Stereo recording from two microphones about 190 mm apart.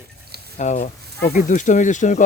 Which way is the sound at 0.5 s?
40° left (ahead or behind).